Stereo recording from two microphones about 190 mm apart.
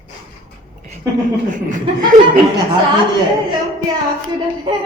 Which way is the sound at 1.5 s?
40° right (ahead or behind).